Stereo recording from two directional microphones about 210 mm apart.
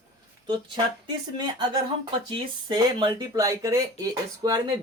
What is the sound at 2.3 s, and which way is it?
Speech, 20° right (ahead or behind).